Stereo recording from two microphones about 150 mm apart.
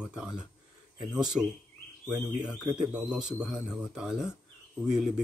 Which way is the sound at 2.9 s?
5° right (ahead or behind).